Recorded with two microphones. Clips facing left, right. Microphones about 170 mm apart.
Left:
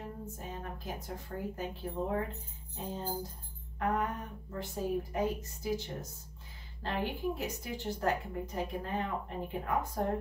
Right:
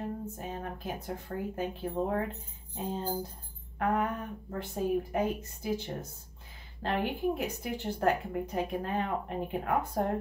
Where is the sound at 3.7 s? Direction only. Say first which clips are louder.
Right 3 dB; 55° right (ahead or behind).